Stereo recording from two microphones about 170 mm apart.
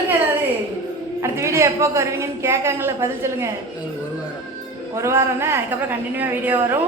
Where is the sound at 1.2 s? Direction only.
15° right (ahead or behind).